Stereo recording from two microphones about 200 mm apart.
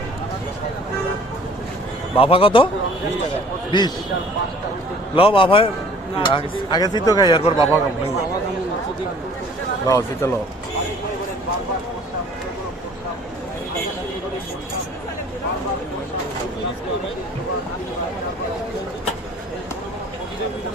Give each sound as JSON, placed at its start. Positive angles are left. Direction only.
{"t": 2.1, "sound": "speech", "side_deg": 25}
{"t": 3.7, "sound": "speech", "side_deg": 20}
{"t": 5.1, "sound": "speech", "side_deg": 25}
{"t": 9.8, "sound": "speech", "side_deg": 15}